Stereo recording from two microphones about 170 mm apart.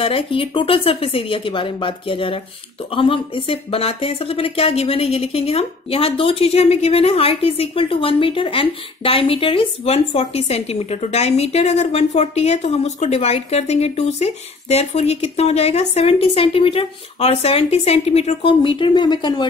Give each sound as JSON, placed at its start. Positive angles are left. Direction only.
{"t": 0.0, "sound": "speech", "side_deg": 30}